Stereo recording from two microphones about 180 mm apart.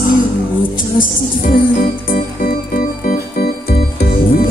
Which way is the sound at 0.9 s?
50° left (ahead or behind).